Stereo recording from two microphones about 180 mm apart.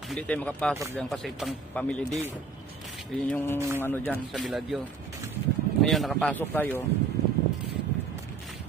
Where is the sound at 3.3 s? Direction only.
10° left (ahead or behind).